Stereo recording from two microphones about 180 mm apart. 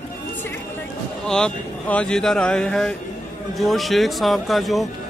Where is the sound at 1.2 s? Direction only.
5° left (ahead or behind).